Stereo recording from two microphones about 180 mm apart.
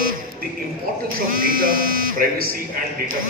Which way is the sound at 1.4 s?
50° right (ahead or behind).